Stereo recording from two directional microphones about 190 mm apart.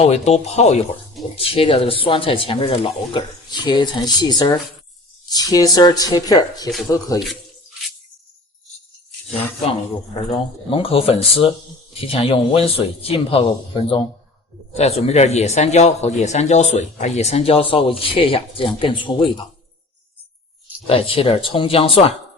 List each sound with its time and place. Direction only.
0.0 s a man's voice: 35° left (ahead or behind); by 7.2 s 20° left (ahead or behind)
10.7 s a man's voice: 30° left (ahead or behind)
20.8 s speech: 30° left (ahead or behind)